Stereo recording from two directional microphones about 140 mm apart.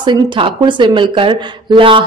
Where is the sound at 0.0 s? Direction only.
35° right (ahead or behind).